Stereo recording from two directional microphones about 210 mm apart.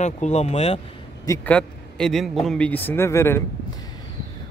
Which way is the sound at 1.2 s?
10° left (ahead or behind).